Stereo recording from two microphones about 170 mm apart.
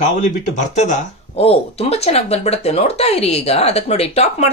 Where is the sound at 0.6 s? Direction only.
45° left (ahead or behind).